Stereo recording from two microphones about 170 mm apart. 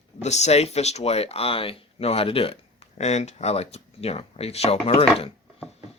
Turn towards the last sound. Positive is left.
turn(degrees=35)  # may be behind; listen again after turning